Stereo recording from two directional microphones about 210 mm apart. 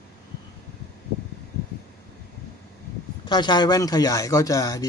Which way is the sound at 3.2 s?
20° left (ahead or behind).